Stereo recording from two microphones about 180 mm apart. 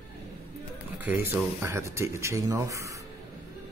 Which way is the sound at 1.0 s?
10° right (ahead or behind).